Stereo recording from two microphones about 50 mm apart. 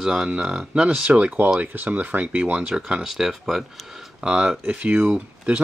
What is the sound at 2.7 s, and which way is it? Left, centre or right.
Speech, centre.